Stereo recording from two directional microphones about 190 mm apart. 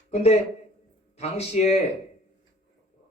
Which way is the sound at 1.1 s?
35° left (ahead or behind).